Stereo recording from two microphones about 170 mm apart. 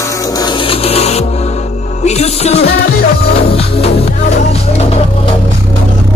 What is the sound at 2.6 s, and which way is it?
Music, 70° left (ahead or behind).